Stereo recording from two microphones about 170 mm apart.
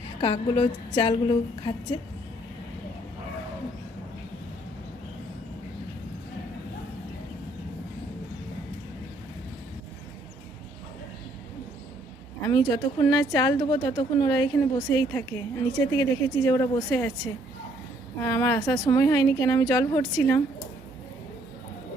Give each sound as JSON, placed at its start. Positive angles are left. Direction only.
{"t": 0.2, "sound": "a woman's voice", "side_deg": 35}
{"t": 12.5, "sound": "a woman's voice", "side_deg": 25}
{"t": 18.2, "sound": "a woman's voice", "side_deg": 20}